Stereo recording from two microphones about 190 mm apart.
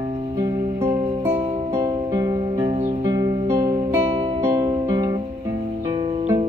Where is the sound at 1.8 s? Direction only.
20° right (ahead or behind).